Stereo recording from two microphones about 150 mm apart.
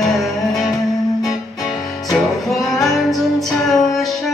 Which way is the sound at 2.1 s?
Centre (ahead or behind).